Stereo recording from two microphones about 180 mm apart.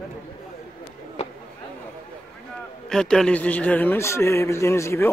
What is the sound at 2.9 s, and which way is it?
A man's voice, 5° left (ahead or behind).